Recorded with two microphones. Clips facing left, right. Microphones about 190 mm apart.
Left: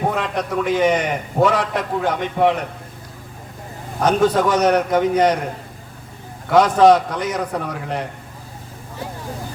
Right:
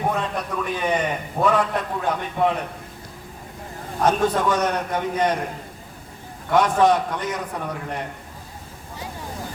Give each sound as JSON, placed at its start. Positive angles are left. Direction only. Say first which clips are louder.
{"t": 0.2, "sound": "a man's voice", "louder": "left 4 dB", "side_deg": 90}
{"t": 4.0, "sound": "a man's voice", "louder": "left 4 dB", "side_deg": 90}
{"t": 6.5, "sound": "a man's voice", "louder": "left 5 dB", "side_deg": 90}